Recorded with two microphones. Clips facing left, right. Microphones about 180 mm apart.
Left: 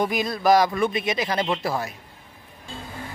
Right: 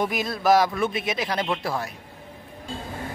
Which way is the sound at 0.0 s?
Centre (ahead or behind).